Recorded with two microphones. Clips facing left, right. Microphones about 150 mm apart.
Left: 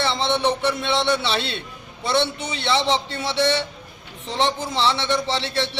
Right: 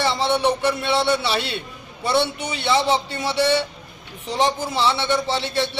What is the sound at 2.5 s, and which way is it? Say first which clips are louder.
A man's voice: right 2 dB; 10° right (ahead or behind).